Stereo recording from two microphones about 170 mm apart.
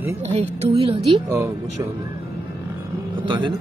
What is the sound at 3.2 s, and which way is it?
Speech, 30° right (ahead or behind).